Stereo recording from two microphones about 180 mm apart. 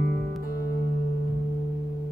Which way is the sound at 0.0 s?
60° right (ahead or behind).